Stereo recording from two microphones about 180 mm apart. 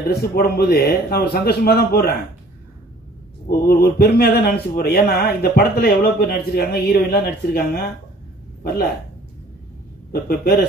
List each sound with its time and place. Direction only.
0.0 s a man's voice: 60° left (ahead or behind)
3.4 s a man's voice: 60° left (ahead or behind)
10.1 s a man's voice: 60° left (ahead or behind)